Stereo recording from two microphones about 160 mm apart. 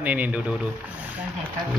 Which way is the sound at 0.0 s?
10° right (ahead or behind).